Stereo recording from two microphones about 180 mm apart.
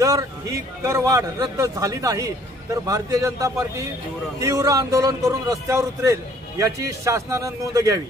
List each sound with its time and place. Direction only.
0.0 s a man's voice: 20° right (ahead or behind)